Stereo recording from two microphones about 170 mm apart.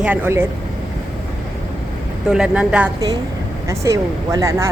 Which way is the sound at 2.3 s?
5° right (ahead or behind).